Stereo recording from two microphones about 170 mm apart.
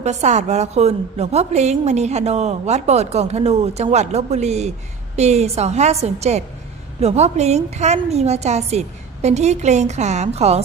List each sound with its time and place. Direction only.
0.0 s a woman's voice: 45° right (ahead or behind)